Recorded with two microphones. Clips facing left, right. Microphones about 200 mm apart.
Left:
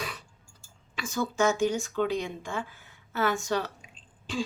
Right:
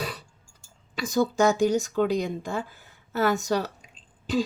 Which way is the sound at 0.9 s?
35° right (ahead or behind).